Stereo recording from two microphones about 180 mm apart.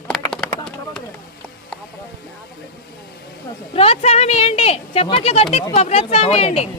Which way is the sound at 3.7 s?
35° left (ahead or behind).